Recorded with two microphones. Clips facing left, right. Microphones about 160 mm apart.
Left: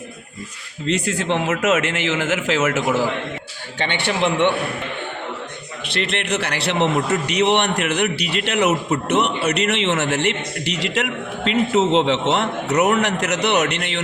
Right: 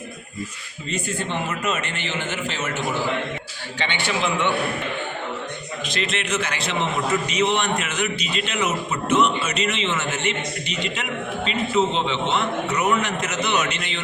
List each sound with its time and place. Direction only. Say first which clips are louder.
0.9 s a man's voice: left 6 dB; 80° left
3.8 s a man's voice: left 4 dB; 55° left (ahead or behind)
5.9 s a man's voice: left 3 dB; 65° left (ahead or behind)